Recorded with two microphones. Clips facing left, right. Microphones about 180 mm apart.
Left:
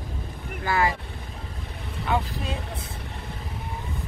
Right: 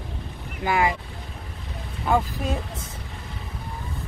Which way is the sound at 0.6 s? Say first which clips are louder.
Right 2 dB; 20° right (ahead or behind).